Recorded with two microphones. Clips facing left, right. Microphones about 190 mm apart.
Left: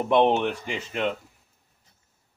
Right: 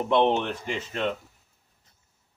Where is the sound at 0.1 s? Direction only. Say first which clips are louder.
Left 2 dB; 15° left (ahead or behind).